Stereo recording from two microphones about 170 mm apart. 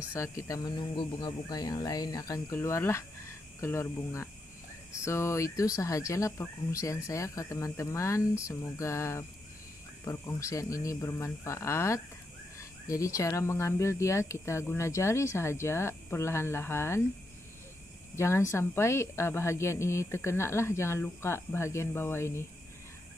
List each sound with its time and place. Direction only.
0.1 s speech: 15° left (ahead or behind)
18.1 s speech: 15° left (ahead or behind)